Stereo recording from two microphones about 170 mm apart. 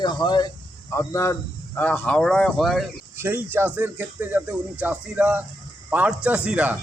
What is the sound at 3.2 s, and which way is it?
Speech, 15° right (ahead or behind).